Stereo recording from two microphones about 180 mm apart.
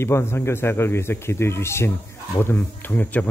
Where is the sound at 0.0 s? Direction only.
15° left (ahead or behind).